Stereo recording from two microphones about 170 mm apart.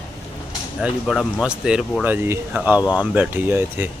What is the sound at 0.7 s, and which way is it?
Speech, centre (ahead or behind).